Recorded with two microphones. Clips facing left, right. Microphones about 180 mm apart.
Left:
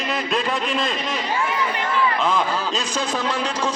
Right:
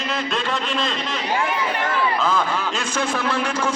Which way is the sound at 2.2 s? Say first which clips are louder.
Even; 15° left (ahead or behind).